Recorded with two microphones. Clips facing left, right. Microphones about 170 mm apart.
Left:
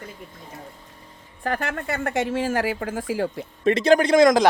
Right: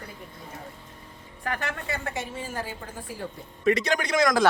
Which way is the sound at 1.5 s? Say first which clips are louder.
Left 5 dB; 50° left (ahead or behind).